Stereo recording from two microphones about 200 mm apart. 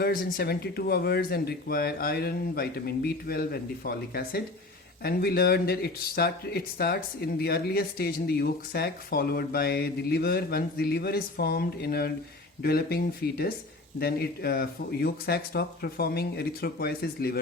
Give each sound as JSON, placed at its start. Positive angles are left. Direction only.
{"t": 0.0, "sound": "speech", "side_deg": 50}